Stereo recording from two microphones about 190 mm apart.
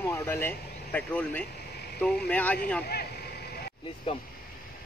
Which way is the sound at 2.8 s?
55° left (ahead or behind).